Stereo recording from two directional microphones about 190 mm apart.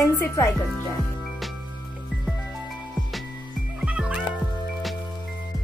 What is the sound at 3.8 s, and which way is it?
Music, 5° right (ahead or behind).